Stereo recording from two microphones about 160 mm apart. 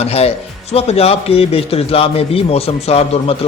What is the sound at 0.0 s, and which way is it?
Speech, 40° left (ahead or behind).